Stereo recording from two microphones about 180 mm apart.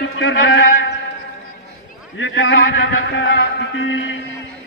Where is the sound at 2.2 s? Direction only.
90° left.